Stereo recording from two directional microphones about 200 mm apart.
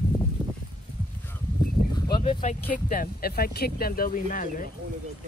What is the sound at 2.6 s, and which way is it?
Speech, 45° left (ahead or behind).